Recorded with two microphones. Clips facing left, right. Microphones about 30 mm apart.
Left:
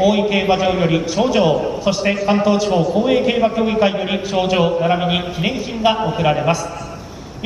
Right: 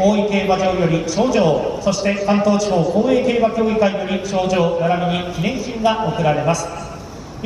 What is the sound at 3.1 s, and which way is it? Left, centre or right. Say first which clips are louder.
A man's voice: even; centre.